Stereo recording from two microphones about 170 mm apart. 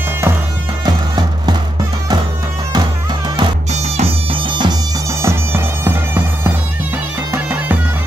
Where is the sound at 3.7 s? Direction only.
40° right (ahead or behind).